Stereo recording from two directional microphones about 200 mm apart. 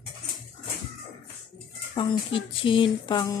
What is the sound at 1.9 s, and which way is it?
Speech, 25° left (ahead or behind).